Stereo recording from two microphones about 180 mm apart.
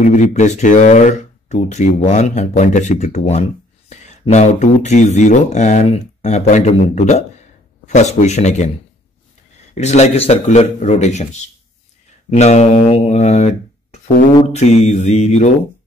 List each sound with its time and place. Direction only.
0.0 s speech: 45° left (ahead or behind)
9.8 s speech: 35° left (ahead or behind)